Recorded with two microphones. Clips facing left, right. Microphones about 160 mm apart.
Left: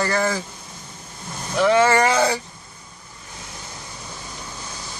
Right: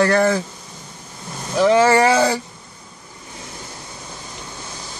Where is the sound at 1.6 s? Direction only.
40° right (ahead or behind).